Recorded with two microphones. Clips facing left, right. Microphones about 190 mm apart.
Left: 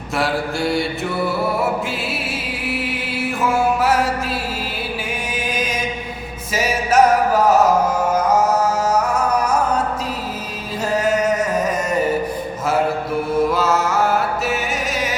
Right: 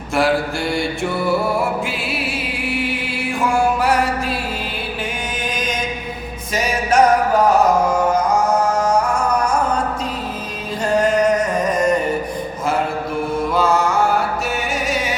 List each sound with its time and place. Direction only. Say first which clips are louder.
0.2 s mantra: right 3 dB; centre (ahead or behind)
2.5 s music: right 1 dB; centre (ahead or behind)
10.8 s music: right 2 dB; 5° left (ahead or behind)
13.5 s mantra: right 1 dB; 5° left (ahead or behind)